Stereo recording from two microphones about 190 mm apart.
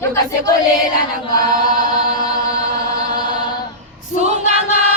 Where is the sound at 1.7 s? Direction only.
20° left (ahead or behind).